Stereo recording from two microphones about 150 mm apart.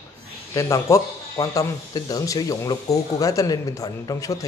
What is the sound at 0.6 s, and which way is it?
Speech, 20° left (ahead or behind).